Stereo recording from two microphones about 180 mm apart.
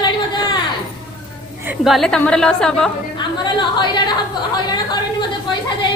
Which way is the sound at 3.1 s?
25° left (ahead or behind).